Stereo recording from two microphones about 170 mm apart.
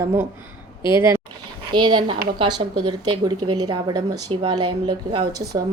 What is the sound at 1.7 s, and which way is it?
A woman's voice, 25° right (ahead or behind).